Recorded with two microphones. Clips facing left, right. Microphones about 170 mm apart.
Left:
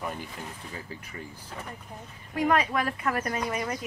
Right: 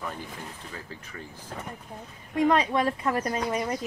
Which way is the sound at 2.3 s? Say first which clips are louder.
Right 2 dB; 25° right (ahead or behind).